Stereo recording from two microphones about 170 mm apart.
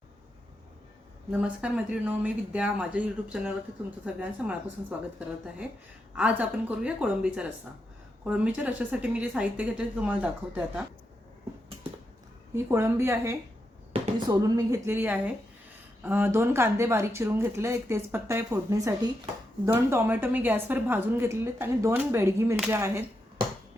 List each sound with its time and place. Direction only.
1.3 s a woman's voice: 5° right (ahead or behind)
6.1 s a woman's voice: 10° right (ahead or behind)
12.5 s a woman's voice: 15° right (ahead or behind)